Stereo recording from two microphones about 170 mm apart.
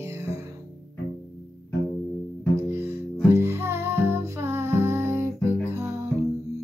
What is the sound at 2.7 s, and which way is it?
Music, 15° right (ahead or behind).